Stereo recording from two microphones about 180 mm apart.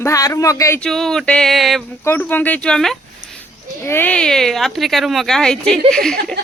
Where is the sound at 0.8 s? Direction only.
Centre (ahead or behind).